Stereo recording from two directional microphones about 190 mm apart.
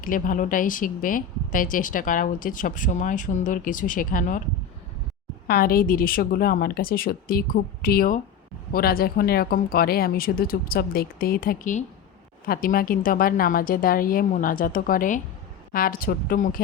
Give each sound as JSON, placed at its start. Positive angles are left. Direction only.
{"t": 0.0, "sound": "speech", "side_deg": 45}
{"t": 5.5, "sound": "speech", "side_deg": 50}